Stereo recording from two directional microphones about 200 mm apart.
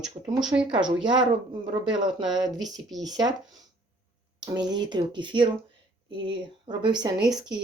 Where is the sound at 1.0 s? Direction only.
20° right (ahead or behind).